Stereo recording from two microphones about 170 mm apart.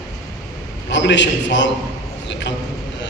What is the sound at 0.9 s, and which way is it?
Speech, 90° left.